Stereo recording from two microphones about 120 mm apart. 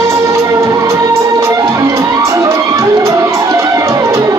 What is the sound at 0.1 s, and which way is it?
Music, 25° right (ahead or behind).